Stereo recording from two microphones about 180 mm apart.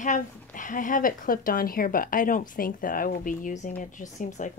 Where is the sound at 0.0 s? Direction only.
45° left (ahead or behind).